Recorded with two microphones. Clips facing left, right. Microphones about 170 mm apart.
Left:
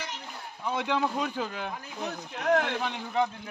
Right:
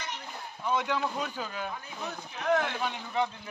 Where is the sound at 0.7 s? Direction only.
60° left (ahead or behind).